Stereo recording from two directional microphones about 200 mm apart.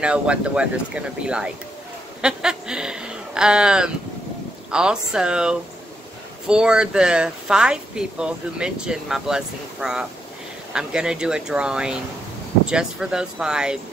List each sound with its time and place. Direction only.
0.0 s speech: 5° right (ahead or behind)